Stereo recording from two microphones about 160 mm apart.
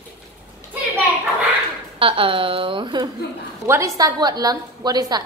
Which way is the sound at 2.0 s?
35° right (ahead or behind).